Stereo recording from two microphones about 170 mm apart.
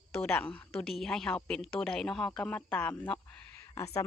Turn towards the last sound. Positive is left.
turn(degrees=15)  # may be behind; listen again after turning